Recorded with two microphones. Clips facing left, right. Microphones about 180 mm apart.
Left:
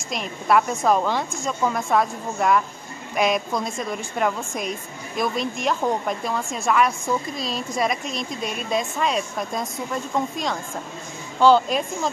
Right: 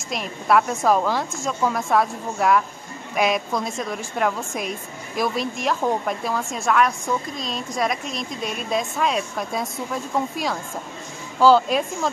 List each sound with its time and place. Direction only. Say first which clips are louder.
0.1 s speech: even; centre (ahead or behind)